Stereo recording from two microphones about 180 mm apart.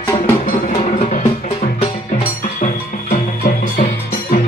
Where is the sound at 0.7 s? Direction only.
40° left (ahead or behind).